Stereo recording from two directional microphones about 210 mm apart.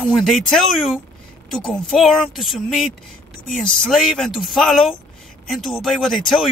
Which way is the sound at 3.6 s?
Centre (ahead or behind).